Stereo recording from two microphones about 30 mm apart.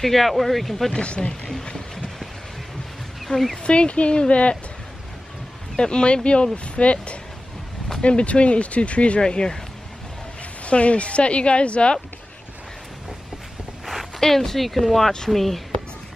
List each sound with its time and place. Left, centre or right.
0.0 s speech: centre
1.0 s speech: left
3.3 s speech: left
5.8 s speech: left
9.2 s speech: left
10.6 s speech: left
14.2 s speech: centre